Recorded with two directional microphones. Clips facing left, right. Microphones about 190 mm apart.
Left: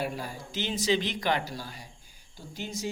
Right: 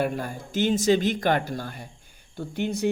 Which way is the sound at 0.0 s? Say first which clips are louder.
Right 6 dB; 50° right (ahead or behind).